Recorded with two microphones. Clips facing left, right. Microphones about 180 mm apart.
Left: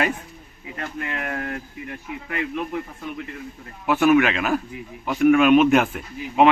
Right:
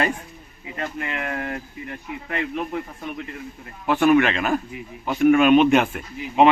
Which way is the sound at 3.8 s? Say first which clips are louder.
Even; 5° left (ahead or behind).